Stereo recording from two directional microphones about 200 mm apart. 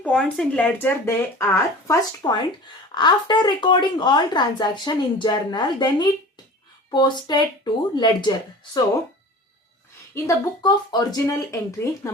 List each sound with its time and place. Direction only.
0.0 s a woman's voice: 5° left (ahead or behind); by 8.8 s 20° left (ahead or behind)
10.2 s speech: 15° left (ahead or behind)